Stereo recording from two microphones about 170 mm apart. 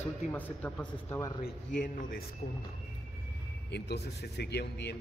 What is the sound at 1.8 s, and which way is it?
Speech, 55° left (ahead or behind).